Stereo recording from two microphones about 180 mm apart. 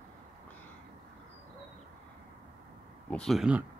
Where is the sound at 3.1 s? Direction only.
Centre (ahead or behind).